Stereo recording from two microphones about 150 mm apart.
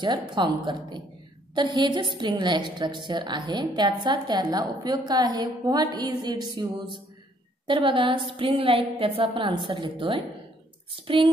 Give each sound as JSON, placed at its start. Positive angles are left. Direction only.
{"t": 0.0, "sound": "a woman's voice", "side_deg": -30}